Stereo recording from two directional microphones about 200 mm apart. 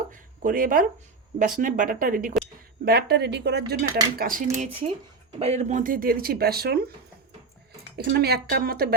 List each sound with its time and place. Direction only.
0.1 s a sound: 45° right (ahead or behind)
1.4 s speech: 40° right (ahead or behind); by 3.8 s 55° right (ahead or behind)
4.2 s speech: 45° right (ahead or behind)
4.5 s speech: 35° right (ahead or behind); by 6.9 s 50° right (ahead or behind)
7.9 s speech: 55° right (ahead or behind)